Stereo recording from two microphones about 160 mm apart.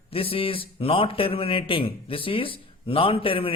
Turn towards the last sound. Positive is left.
turn(degrees=35)  # may be behind; listen again after turning